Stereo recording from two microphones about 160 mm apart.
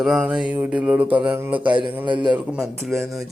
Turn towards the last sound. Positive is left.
turn(degrees=0)  # may be behind; listen again after turning